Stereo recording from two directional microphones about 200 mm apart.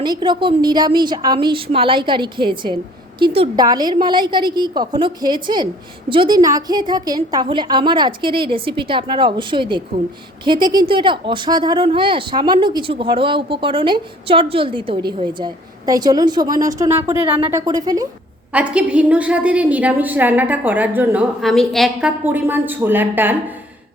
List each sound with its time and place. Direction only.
0.0 s a woman's voice: 20° right (ahead or behind)
18.5 s a woman's voice: 5° right (ahead or behind)